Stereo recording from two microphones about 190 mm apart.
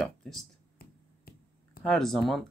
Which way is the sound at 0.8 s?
50° left (ahead or behind).